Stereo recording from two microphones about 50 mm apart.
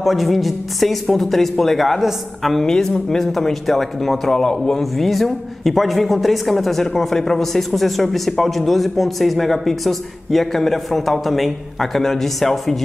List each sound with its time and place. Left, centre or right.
0.0 s speech: centre
2.6 s speech: centre